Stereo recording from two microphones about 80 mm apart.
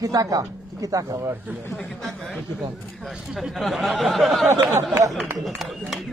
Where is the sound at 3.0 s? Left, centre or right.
Centre.